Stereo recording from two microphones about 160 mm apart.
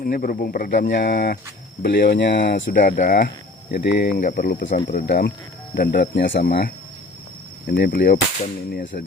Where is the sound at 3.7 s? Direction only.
90° left.